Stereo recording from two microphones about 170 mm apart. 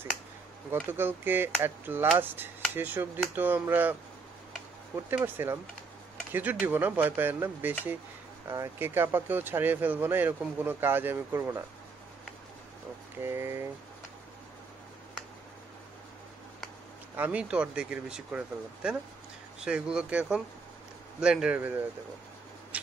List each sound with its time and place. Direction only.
0.8 s speech: 10° right (ahead or behind)
5.1 s speech: 10° right (ahead or behind)
13.2 s speech: 15° right (ahead or behind)
17.2 s speech: 5° right (ahead or behind)